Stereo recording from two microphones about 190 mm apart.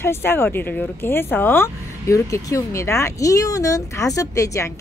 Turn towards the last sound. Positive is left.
turn(degrees=15)  # may be behind; listen again after turning